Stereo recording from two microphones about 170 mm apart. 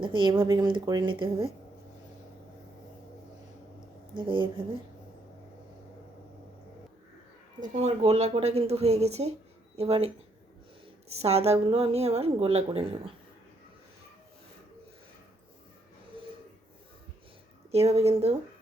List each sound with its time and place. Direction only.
0.0 s speech: 30° right (ahead or behind)
4.2 s speech: 30° right (ahead or behind)
7.6 s speech: 45° right (ahead or behind)
11.1 s speech: 40° right (ahead or behind)
17.7 s speech: 35° right (ahead or behind)